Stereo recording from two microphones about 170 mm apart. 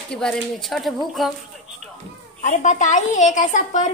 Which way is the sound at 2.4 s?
45° left (ahead or behind).